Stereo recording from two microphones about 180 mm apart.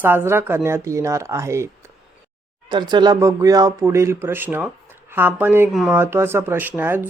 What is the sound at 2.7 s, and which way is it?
Speech, 25° right (ahead or behind).